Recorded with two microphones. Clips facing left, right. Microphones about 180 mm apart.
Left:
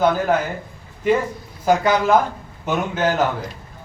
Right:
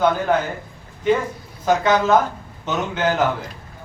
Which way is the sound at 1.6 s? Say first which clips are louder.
Even; 10° left (ahead or behind).